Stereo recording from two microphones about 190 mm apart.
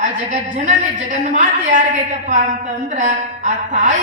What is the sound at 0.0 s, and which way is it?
A woman's voice, 40° right (ahead or behind).